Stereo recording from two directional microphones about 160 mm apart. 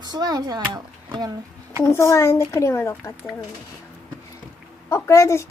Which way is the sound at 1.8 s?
20° left (ahead or behind).